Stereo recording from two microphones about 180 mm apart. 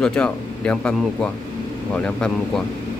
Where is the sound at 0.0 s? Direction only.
5° left (ahead or behind).